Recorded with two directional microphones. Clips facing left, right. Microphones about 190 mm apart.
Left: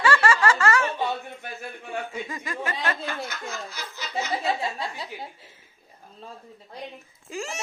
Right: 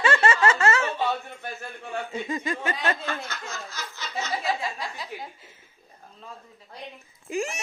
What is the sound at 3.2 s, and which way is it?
Laughter, 10° left (ahead or behind).